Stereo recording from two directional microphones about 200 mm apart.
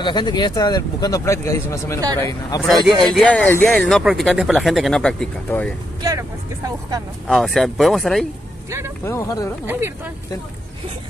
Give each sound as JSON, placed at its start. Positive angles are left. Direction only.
{"t": 0.0, "sound": "a man's voice", "side_deg": 20}
{"t": 6.0, "sound": "vehicle", "side_deg": -15}
{"t": 7.2, "sound": "speech", "side_deg": 0}
{"t": 8.6, "sound": "speech", "side_deg": -15}
{"t": 9.0, "sound": "a man's voice", "side_deg": 15}
{"t": 9.7, "sound": "speech", "side_deg": -10}